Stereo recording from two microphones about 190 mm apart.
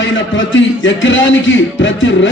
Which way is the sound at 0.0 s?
80° left.